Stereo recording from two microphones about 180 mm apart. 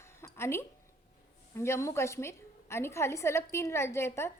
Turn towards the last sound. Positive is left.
turn(degrees=15)  # may be behind; listen again after turning